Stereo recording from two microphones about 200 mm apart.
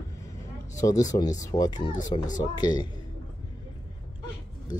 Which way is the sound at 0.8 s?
15° left (ahead or behind).